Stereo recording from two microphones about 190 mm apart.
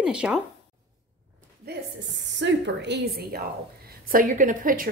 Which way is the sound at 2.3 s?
70° right (ahead or behind).